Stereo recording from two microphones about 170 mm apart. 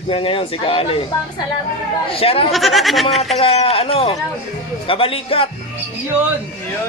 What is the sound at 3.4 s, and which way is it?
Speech, 35° left (ahead or behind).